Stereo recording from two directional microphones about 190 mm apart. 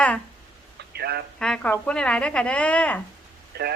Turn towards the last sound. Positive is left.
turn(degrees=-55)  # may be behind; listen again after turning